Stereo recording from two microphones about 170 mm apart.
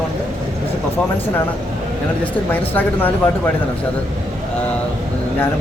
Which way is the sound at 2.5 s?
10° left (ahead or behind).